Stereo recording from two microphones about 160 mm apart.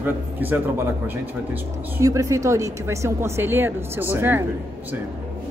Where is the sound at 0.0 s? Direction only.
10° right (ahead or behind).